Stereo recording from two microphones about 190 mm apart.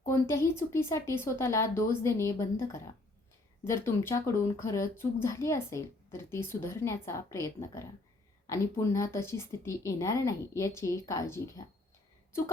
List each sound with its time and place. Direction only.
0.0 s speech: 15° left (ahead or behind)